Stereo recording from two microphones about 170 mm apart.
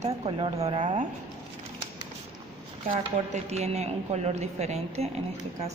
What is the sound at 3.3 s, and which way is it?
Speech, 40° right (ahead or behind).